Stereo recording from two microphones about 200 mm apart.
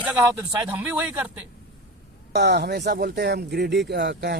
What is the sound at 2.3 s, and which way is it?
Speech, 55° right (ahead or behind).